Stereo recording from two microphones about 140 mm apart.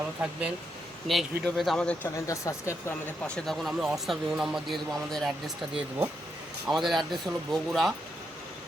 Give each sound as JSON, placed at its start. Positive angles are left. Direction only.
{"t": 0.2, "sound": "speech", "side_deg": -10}
{"t": 2.1, "sound": "speech", "side_deg": 20}
{"t": 3.2, "sound": "speech", "side_deg": 5}
{"t": 6.7, "sound": "speech", "side_deg": 0}